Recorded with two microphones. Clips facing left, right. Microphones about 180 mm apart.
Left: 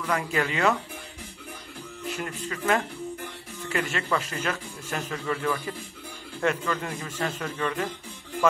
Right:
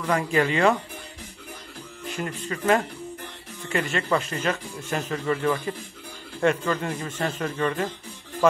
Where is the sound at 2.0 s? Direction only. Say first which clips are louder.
Right 2 dB; 5° left (ahead or behind).